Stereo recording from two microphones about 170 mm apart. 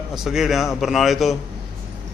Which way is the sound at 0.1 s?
Centre (ahead or behind).